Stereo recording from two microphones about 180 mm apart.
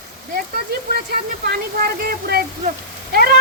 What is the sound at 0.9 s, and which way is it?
Speech, 60° right (ahead or behind).